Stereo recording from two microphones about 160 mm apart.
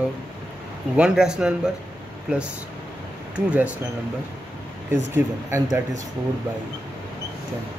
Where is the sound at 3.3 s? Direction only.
10° right (ahead or behind).